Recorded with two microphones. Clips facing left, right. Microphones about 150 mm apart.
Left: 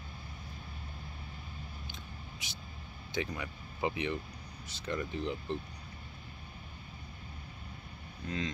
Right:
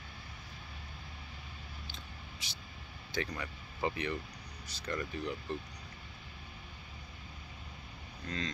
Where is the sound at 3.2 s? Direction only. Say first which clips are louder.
Left 1 dB; 10° left (ahead or behind).